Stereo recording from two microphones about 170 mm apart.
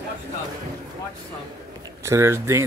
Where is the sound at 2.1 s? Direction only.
15° right (ahead or behind).